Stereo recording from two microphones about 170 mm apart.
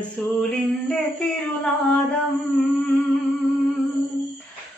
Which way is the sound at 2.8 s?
10° left (ahead or behind).